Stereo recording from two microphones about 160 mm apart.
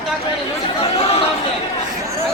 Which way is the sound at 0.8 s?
40° left (ahead or behind).